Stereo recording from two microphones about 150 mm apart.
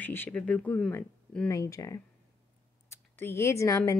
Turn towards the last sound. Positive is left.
turn(degrees=20)  # may be behind; listen again after turning